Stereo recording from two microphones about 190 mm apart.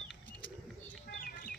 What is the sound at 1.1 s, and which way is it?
Chirp, 50° left (ahead or behind).